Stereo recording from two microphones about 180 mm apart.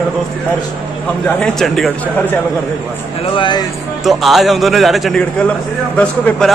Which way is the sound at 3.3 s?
25° left (ahead or behind).